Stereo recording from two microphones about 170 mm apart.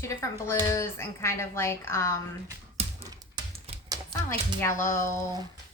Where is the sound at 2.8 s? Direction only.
35° right (ahead or behind).